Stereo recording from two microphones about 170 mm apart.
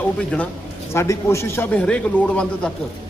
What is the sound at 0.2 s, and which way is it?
Speech, 5° left (ahead or behind).